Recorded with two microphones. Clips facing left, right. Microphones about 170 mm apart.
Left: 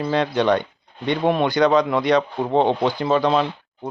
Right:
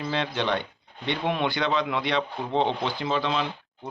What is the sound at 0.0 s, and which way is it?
Speech, 45° left (ahead or behind).